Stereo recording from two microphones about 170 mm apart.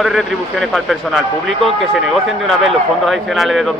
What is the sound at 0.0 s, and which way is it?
Speech, centre (ahead or behind).